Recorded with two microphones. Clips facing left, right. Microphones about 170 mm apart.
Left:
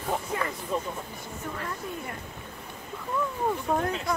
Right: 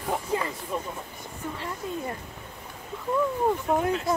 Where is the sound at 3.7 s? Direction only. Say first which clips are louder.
Right 3 dB; 10° right (ahead or behind).